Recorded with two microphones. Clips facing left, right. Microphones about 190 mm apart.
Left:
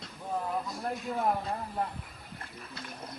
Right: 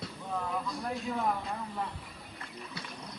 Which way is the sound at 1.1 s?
35° left (ahead or behind).